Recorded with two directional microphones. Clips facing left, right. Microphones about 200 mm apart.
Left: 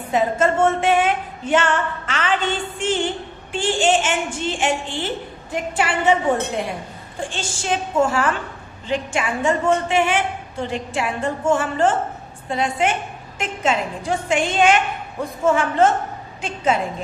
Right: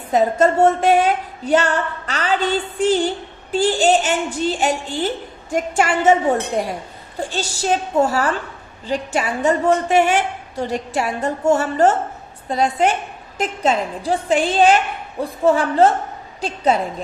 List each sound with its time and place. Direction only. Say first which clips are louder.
0.1 s a woman's voice: right 3 dB; 40° right (ahead or behind)